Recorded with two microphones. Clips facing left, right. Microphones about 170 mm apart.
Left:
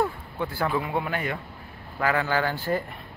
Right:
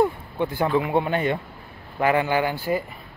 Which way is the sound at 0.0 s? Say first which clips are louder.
Right 5 dB; 20° right (ahead or behind).